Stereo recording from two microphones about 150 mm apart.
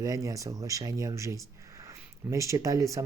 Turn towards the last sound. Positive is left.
turn(degrees=-20)  # may be behind; listen again after turning